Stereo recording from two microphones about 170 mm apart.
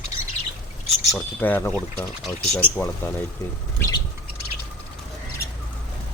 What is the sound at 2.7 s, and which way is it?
Speech, 10° left (ahead or behind).